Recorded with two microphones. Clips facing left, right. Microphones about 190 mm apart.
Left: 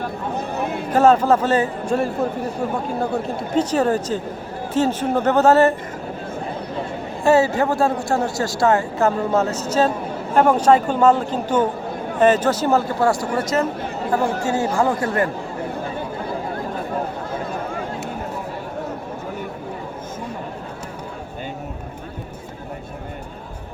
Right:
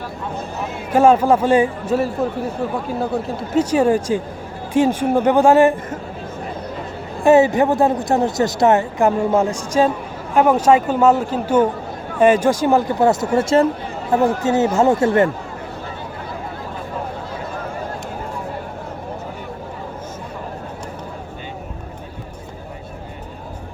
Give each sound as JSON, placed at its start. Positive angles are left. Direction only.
{"t": 0.9, "sound": "speech", "side_deg": -10}
{"t": 3.3, "sound": "speech", "side_deg": -10}
{"t": 7.3, "sound": "speech", "side_deg": -20}